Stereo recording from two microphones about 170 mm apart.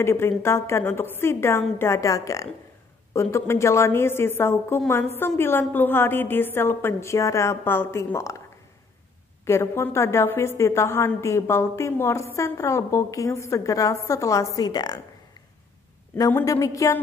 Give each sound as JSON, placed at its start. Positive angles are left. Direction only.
{"t": 0.0, "sound": "a woman's voice", "side_deg": 15}
{"t": 9.4, "sound": "a woman's voice", "side_deg": 15}
{"t": 16.3, "sound": "a woman's voice", "side_deg": 15}